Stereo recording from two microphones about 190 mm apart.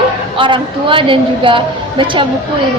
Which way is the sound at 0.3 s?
25° right (ahead or behind).